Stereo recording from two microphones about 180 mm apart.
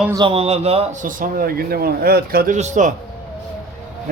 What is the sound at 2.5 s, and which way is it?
Speech, 40° right (ahead or behind).